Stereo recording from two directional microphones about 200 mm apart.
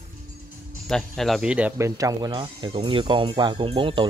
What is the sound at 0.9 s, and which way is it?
Speech, centre (ahead or behind).